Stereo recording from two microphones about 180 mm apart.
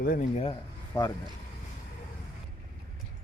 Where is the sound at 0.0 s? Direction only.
55° left (ahead or behind).